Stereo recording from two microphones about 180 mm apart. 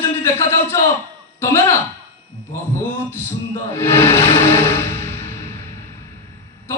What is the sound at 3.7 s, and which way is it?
Music, 15° left (ahead or behind).